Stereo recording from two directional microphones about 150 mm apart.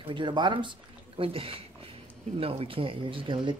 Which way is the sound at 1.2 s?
35° right (ahead or behind).